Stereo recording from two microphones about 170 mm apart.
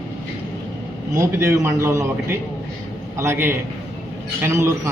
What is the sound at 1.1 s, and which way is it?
A man's voice, 15° right (ahead or behind).